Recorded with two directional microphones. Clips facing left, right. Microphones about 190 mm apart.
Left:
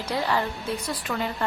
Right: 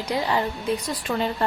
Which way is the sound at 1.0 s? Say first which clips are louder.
Right 5 dB; 30° right (ahead or behind).